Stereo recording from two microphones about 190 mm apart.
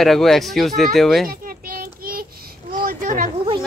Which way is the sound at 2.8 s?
45° right (ahead or behind).